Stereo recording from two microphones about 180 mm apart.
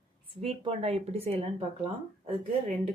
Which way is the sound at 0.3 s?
35° right (ahead or behind).